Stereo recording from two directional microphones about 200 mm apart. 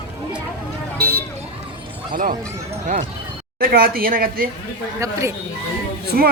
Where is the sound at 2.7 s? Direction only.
30° right (ahead or behind).